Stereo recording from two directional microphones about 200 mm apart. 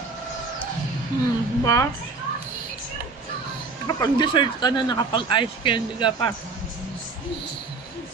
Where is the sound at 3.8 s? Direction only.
20° left (ahead or behind).